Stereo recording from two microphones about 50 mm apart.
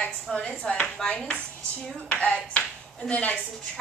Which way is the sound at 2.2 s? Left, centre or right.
Left.